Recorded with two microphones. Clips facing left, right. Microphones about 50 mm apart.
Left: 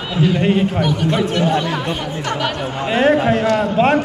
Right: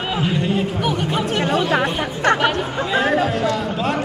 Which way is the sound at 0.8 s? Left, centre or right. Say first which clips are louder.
Left 3 dB; centre.